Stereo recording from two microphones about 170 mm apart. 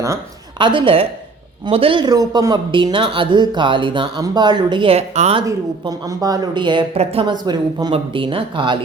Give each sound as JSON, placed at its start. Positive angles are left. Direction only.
{"t": 0.6, "sound": "a woman's voice", "side_deg": -30}
{"t": 5.4, "sound": "speech", "side_deg": -25}